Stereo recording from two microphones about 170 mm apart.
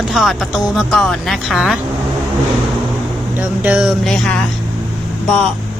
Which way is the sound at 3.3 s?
10° right (ahead or behind).